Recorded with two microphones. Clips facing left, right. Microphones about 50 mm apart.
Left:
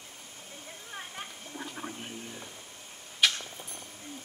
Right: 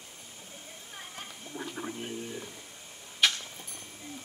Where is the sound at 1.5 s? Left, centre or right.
Centre.